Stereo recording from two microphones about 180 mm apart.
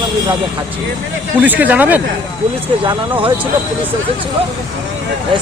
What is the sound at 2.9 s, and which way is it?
Speech, 30° right (ahead or behind).